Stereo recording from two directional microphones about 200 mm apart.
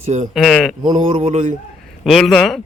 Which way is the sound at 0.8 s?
35° right (ahead or behind).